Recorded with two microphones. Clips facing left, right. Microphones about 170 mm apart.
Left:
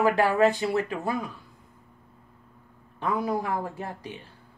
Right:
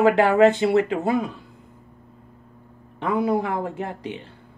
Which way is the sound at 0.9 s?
65° right (ahead or behind).